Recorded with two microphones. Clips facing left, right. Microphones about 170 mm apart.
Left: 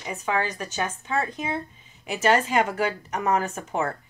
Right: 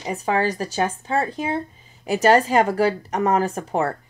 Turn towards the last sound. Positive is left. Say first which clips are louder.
# right 5 dB
turn(degrees=-35)  # may be behind; listen again after turning